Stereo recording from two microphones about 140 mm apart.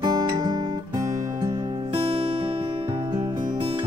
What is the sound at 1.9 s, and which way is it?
Music, 45° right (ahead or behind).